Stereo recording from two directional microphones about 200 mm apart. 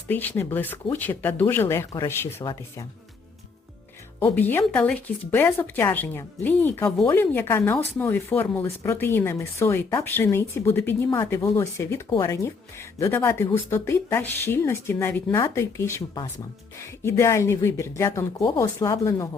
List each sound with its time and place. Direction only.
0.1 s speech: 10° left (ahead or behind)
4.2 s speech: 10° left (ahead or behind)